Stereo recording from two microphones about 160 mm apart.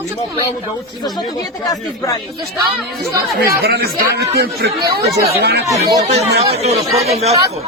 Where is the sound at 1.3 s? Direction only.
20° left (ahead or behind).